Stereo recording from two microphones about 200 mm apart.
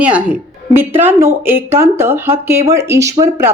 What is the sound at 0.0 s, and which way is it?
Speech, 5° right (ahead or behind).